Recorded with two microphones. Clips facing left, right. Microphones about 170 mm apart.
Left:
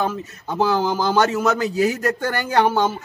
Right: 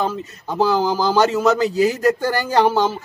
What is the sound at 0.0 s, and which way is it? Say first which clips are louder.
A man's voice: right 1 dB; 5° right (ahead or behind).